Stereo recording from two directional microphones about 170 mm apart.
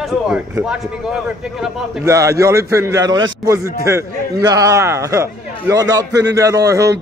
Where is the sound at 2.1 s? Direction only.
20° right (ahead or behind).